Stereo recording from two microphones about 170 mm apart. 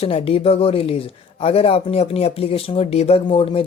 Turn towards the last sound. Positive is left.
turn(degrees=30)  # may be behind; listen again after turning